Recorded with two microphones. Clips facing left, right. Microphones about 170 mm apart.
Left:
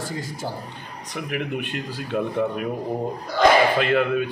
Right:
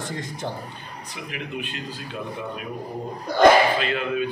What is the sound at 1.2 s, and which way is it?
Speech, 55° left (ahead or behind).